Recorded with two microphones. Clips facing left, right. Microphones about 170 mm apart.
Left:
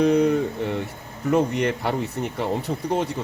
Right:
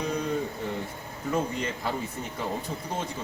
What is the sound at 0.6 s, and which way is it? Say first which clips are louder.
A man's voice: left 6 dB; 70° left (ahead or behind).